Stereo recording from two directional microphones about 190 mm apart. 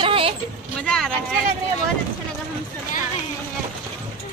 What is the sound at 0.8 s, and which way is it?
Speech, 5° left (ahead or behind).